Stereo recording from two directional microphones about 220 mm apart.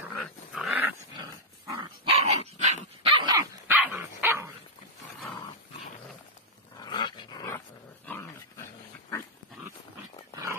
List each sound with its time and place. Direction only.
0.1 s dog: centre (ahead or behind); by 2.1 s 20° right (ahead or behind)
2.2 s dog: 30° right (ahead or behind)
3.7 s dog: 10° right (ahead or behind)
6.8 s dog: 20° left (ahead or behind)